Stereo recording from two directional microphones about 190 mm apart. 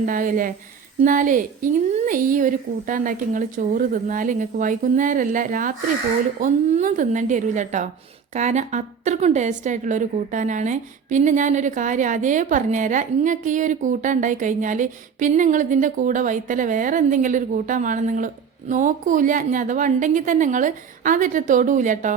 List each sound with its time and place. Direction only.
0.0 s a woman's voice: 45° right (ahead or behind)